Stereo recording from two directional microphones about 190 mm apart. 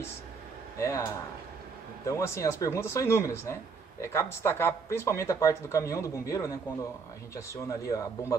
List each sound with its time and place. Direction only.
0.7 s speech: 15° left (ahead or behind)
2.0 s speech: 15° left (ahead or behind)